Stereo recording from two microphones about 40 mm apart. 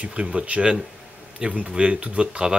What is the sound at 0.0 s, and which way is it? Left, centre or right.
Speech, right.